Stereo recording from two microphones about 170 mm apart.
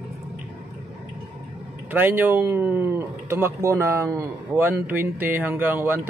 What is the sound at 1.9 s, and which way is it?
Speech, 10° right (ahead or behind).